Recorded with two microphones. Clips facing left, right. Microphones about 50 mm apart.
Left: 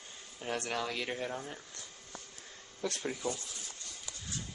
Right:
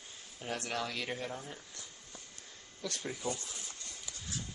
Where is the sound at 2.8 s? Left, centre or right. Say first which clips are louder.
Left 4 dB; left.